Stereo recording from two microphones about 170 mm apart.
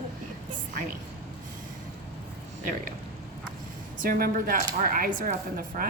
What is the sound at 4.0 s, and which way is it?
A woman's voice, 55° right (ahead or behind).